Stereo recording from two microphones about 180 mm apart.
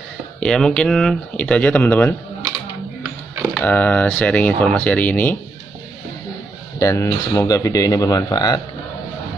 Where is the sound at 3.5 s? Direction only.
10° left (ahead or behind).